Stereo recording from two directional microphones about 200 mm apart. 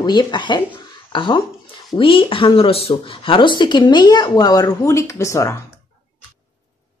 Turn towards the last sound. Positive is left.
turn(degrees=15)  # may be behind; listen again after turning